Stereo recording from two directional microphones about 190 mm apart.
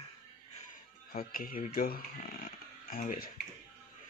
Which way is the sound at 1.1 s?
50° left (ahead or behind).